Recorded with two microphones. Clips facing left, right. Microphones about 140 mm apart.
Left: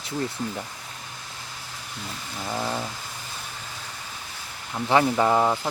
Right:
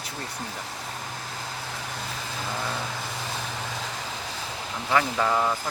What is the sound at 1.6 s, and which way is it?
Vehicle, 90° right.